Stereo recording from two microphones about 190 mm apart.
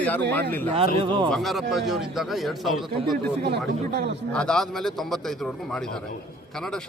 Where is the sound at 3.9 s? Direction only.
60° right (ahead or behind).